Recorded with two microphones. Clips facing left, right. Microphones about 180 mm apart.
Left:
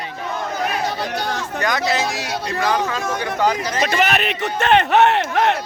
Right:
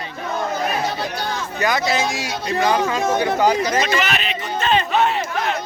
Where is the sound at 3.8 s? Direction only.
55° left (ahead or behind); by 5.6 s 75° left (ahead or behind).